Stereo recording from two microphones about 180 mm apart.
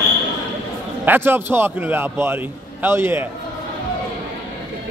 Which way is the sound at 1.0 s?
10° right (ahead or behind).